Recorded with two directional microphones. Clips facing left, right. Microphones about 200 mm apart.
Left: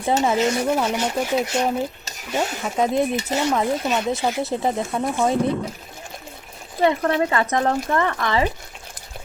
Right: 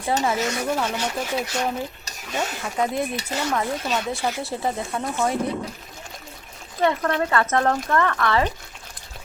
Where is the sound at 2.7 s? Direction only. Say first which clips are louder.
Left 5 dB; 20° left (ahead or behind).